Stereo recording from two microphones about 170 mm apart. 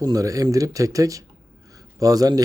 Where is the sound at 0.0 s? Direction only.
20° right (ahead or behind).